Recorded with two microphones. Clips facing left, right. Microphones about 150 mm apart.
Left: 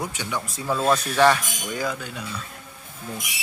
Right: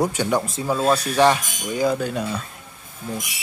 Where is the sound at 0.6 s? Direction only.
15° right (ahead or behind).